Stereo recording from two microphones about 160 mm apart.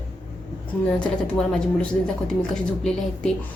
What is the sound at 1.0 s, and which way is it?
A woman's voice, 5° left (ahead or behind).